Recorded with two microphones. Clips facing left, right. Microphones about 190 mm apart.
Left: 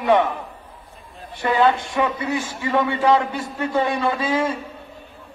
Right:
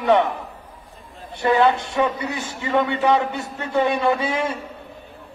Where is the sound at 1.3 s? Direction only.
25° right (ahead or behind).